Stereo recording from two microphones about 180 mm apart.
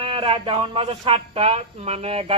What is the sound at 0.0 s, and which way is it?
Speech, 30° right (ahead or behind).